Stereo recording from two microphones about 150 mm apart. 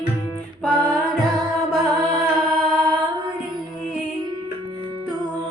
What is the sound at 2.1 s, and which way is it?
Music, 5° left (ahead or behind).